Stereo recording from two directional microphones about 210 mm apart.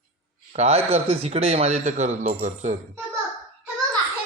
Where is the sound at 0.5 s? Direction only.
30° right (ahead or behind).